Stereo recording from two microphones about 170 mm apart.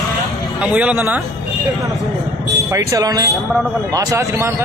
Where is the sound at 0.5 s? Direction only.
10° right (ahead or behind).